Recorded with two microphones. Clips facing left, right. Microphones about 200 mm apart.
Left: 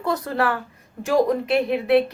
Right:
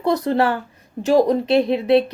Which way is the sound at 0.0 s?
25° right (ahead or behind).